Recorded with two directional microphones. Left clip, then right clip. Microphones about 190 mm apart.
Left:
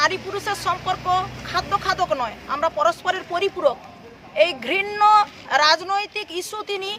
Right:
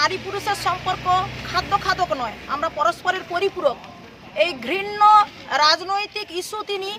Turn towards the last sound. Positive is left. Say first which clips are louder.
# right 1 dB
turn(degrees=5)  # may be behind; listen again after turning